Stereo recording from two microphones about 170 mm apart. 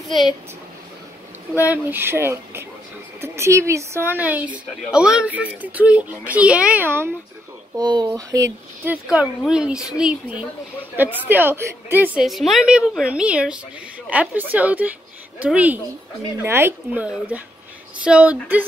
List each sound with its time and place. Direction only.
1.6 s speech: 10° right (ahead or behind)
7.7 s speech: 25° right (ahead or behind)
9.1 s a woman's voice: 5° right (ahead or behind)